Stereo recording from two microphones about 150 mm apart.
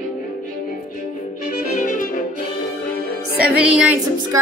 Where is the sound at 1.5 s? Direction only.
60° left (ahead or behind).